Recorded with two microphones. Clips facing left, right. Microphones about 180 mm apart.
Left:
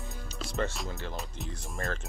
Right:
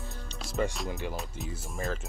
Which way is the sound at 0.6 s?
5° right (ahead or behind).